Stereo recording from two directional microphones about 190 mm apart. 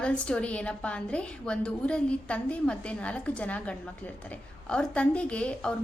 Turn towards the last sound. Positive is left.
turn(degrees=5)  # may be behind; listen again after turning